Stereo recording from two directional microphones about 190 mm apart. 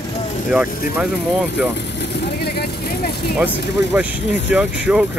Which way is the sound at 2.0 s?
60° left (ahead or behind).